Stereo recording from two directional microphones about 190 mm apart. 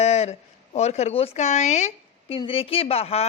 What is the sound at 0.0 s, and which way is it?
A woman's voice, 35° left (ahead or behind).